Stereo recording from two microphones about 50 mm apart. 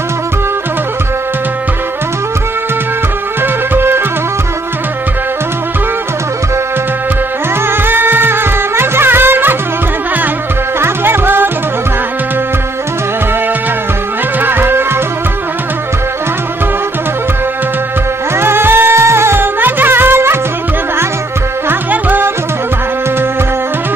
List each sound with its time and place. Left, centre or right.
3.7 s music: right
7.8 s music: right
10.8 s music: right
14.4 s music: right
18.4 s music: right
21.6 s music: right